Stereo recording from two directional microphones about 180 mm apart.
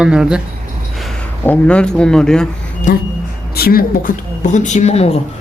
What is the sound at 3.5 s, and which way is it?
Speech, 55° left (ahead or behind).